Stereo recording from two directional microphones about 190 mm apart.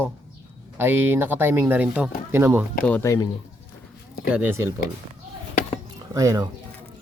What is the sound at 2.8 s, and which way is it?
Speech, 10° left (ahead or behind).